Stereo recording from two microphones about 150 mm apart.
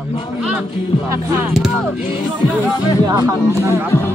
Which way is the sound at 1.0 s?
15° right (ahead or behind).